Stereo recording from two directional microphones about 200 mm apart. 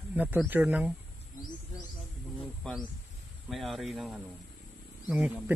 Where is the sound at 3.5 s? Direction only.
Centre (ahead or behind).